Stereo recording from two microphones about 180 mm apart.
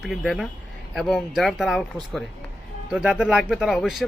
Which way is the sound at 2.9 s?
5° right (ahead or behind).